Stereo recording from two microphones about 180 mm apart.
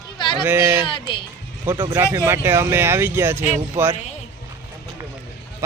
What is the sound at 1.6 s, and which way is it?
Speech, 15° right (ahead or behind).